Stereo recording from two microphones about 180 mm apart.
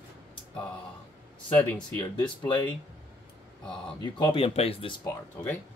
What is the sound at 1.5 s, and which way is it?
Speech, 5° left (ahead or behind).